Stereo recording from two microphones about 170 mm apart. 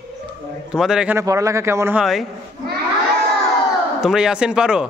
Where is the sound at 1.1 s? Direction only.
20° right (ahead or behind).